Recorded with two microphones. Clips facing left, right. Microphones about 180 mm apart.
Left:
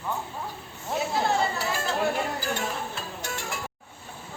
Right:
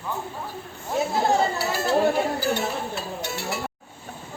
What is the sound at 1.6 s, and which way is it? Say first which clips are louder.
Speech: right 6 dB; 10° right (ahead or behind).